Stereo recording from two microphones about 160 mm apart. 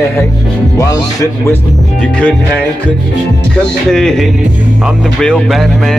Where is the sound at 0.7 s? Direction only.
20° left (ahead or behind).